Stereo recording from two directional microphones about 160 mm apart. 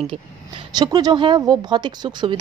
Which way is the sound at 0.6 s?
25° right (ahead or behind).